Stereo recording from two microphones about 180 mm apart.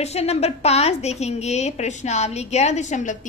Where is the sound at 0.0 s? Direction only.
35° left (ahead or behind).